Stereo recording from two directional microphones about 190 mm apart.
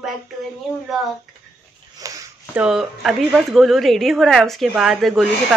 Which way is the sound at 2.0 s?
15° right (ahead or behind).